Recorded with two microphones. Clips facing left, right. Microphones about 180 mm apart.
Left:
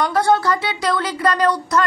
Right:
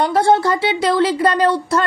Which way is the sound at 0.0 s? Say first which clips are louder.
Right 2 dB; 25° right (ahead or behind).